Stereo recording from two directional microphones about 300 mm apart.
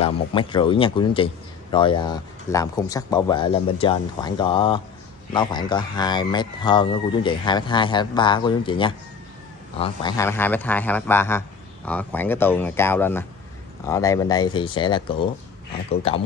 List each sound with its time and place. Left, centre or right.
0.0 s a man's voice: centre